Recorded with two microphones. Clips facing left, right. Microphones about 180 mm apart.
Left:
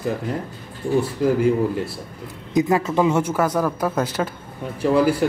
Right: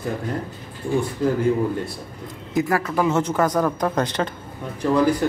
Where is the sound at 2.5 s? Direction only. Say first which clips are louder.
Left 3 dB; 20° left (ahead or behind).